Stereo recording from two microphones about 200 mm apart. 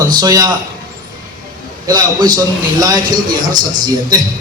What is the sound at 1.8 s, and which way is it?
A man's voice, 20° right (ahead or behind).